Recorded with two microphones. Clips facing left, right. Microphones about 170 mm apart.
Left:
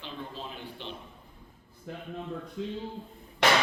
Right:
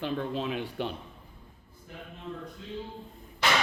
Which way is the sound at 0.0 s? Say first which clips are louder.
Right 9 dB; 70° right (ahead or behind).